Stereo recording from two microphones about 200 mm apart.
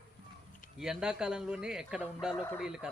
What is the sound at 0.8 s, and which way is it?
Speech, 5° right (ahead or behind).